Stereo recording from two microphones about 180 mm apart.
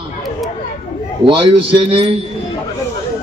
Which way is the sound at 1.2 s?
30° right (ahead or behind).